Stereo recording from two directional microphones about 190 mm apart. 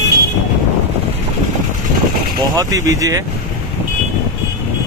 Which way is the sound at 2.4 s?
20° right (ahead or behind).